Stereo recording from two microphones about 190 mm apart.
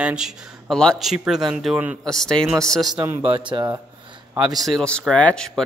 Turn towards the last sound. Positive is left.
turn(degrees=5)  # may be behind; listen again after turning